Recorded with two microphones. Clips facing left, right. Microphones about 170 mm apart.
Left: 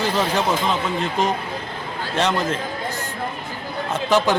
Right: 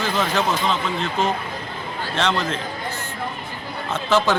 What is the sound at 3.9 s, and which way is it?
Speech, 15° left (ahead or behind).